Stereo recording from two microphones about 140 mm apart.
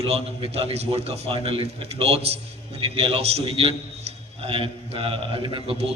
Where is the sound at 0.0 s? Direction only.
45° right (ahead or behind).